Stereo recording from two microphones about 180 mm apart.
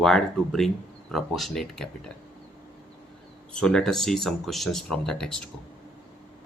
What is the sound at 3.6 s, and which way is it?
Speech, 5° left (ahead or behind).